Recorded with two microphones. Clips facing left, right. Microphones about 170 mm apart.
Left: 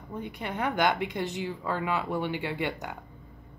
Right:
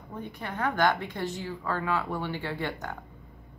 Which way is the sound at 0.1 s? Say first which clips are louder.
Left 2 dB; 15° left (ahead or behind).